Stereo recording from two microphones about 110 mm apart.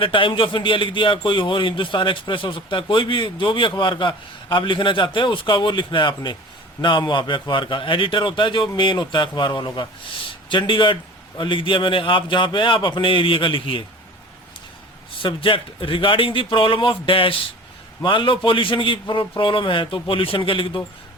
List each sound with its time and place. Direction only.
0.0 s a man's voice: 50° left (ahead or behind)
15.2 s a man's voice: 50° left (ahead or behind)